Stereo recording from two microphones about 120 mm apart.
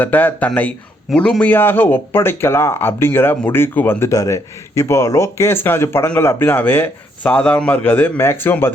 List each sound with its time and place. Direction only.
0.0 s a man's voice: 15° left (ahead or behind)